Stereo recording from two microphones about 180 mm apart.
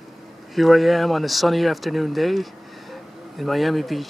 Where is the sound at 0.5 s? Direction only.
Centre (ahead or behind).